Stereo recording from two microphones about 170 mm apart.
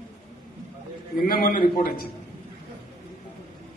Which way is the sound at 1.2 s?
60° left (ahead or behind).